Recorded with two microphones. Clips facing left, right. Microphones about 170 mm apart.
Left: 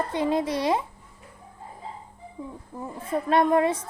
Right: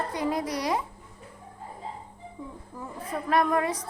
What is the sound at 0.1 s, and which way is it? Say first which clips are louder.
Speech: left 4 dB; 25° left (ahead or behind).